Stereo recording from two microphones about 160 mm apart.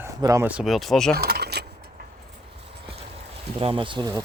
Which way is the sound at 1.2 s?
85° right.